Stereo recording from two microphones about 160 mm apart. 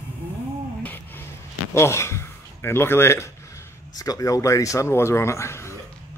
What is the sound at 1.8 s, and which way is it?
A man's voice, 15° left (ahead or behind).